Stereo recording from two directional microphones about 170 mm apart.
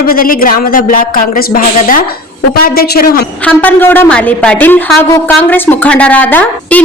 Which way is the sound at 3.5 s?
10° left (ahead or behind).